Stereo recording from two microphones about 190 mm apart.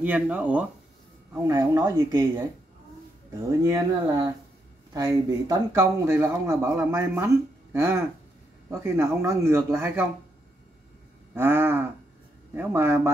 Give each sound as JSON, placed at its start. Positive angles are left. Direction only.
{"t": 0.0, "sound": "speech", "side_deg": -10}
{"t": 3.6, "sound": "speech", "side_deg": -20}
{"t": 11.3, "sound": "speech", "side_deg": -10}